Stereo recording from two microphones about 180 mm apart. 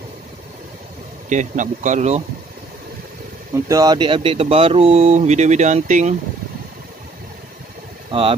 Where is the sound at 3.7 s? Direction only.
20° right (ahead or behind); by 6.2 s 45° right (ahead or behind).